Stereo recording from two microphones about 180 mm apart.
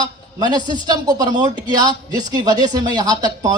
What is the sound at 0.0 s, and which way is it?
Speech, 20° right (ahead or behind).